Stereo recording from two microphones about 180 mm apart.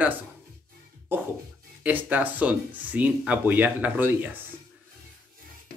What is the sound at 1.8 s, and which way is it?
Speech, 10° right (ahead or behind).